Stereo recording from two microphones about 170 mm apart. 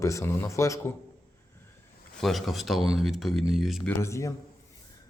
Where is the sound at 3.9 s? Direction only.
15° left (ahead or behind).